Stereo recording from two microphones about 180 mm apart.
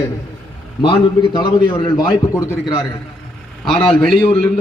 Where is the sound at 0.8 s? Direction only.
25° left (ahead or behind).